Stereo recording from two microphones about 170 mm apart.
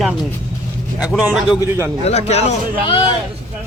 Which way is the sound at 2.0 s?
40° left (ahead or behind).